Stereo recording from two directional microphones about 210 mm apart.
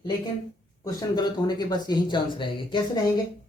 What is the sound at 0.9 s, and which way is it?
Speech, 20° left (ahead or behind).